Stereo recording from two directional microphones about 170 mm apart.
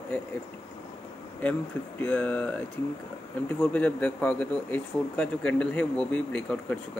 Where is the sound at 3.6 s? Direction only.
10° left (ahead or behind).